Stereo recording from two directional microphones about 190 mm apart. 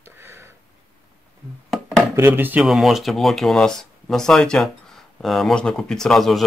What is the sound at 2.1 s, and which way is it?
Speech, 10° right (ahead or behind).